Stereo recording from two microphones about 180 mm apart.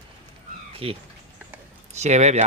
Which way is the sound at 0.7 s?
30° right (ahead or behind).